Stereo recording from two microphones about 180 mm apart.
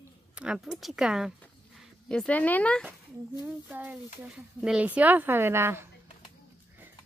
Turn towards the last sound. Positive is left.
turn(degrees=-15)  # may be behind; listen again after turning